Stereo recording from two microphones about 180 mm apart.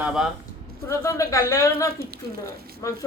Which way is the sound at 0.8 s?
15° left (ahead or behind).